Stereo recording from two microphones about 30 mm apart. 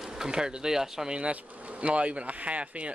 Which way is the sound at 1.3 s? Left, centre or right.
Right.